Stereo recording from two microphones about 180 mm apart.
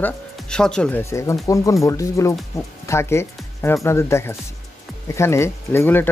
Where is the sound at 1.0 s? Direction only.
15° left (ahead or behind).